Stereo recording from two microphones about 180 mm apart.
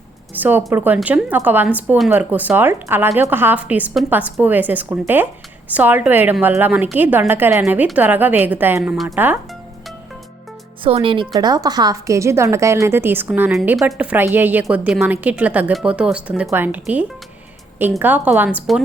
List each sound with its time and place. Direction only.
0.3 s a woman's voice: 10° right (ahead or behind)
10.8 s a woman's voice: 30° right (ahead or behind); by 18.8 s 5° right (ahead or behind)